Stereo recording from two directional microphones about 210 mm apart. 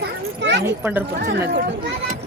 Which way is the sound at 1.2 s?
50° right (ahead or behind).